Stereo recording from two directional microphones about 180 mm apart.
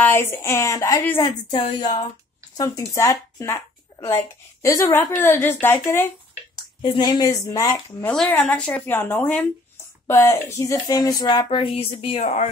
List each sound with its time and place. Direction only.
0.0 s a woman's voice: 10° left (ahead or behind)
1.5 s a woman's voice: 25° left (ahead or behind)
5.9 s a sound: 15° left (ahead or behind)
6.8 s speech: 25° left (ahead or behind)
8.3 s a woman's voice: 5° left (ahead or behind); by 12.4 s 35° left (ahead or behind)